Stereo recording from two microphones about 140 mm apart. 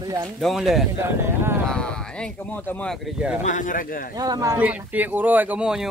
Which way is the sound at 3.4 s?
65° left (ahead or behind).